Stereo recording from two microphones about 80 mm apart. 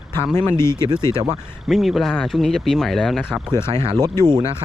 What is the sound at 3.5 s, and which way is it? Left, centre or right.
Speech, left.